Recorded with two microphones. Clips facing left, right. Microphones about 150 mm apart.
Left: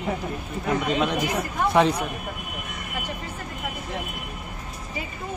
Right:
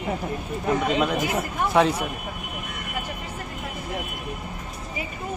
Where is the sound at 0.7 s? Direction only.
5° right (ahead or behind).